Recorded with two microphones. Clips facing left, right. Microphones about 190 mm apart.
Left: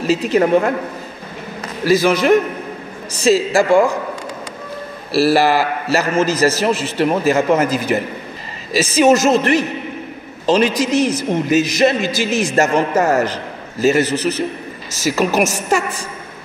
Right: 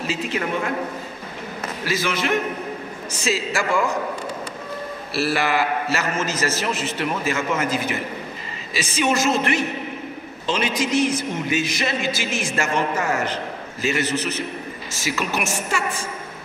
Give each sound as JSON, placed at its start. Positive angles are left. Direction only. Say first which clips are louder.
{"t": 0.0, "sound": "a man's voice", "louder": "left 10 dB", "side_deg": 40}
{"t": 1.9, "sound": "a man's voice", "louder": "left 11 dB", "side_deg": 40}
{"t": 5.1, "sound": "a man's voice", "louder": "left 8 dB", "side_deg": 35}